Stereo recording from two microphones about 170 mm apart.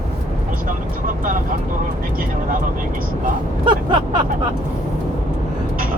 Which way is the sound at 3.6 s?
25° right (ahead or behind).